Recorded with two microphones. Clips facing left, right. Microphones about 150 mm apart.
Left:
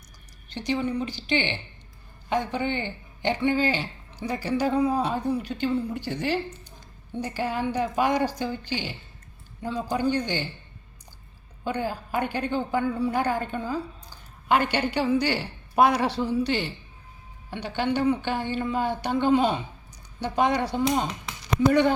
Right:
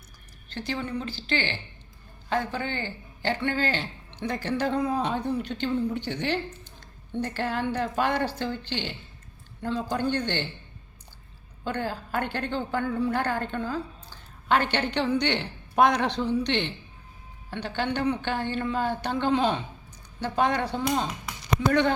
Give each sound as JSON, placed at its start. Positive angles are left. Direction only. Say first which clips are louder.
{"t": 0.5, "sound": "speech", "louder": "left 4 dB", "side_deg": 15}
{"t": 11.6, "sound": "speech", "louder": "left 2 dB", "side_deg": 10}